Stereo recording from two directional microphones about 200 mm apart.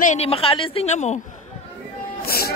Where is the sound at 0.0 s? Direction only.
35° left (ahead or behind).